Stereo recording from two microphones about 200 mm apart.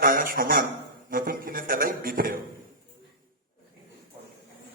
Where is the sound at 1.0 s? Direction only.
45° right (ahead or behind).